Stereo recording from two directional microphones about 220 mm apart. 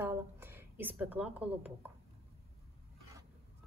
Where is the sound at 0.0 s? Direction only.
10° right (ahead or behind).